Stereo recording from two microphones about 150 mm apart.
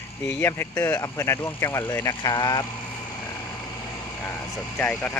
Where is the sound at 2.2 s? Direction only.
30° left (ahead or behind).